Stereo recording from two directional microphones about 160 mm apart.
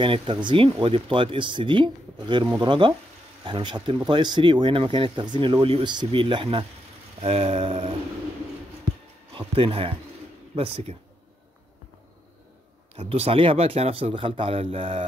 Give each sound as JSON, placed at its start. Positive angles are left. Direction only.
{"t": 0.0, "sound": "speech", "side_deg": -30}
{"t": 9.6, "sound": "speech", "side_deg": -35}
{"t": 12.9, "sound": "speech", "side_deg": -40}